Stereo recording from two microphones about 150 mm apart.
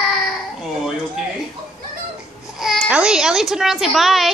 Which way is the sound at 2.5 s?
Centre (ahead or behind).